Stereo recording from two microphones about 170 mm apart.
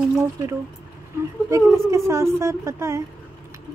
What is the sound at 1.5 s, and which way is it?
A woman's voice, 15° right (ahead or behind).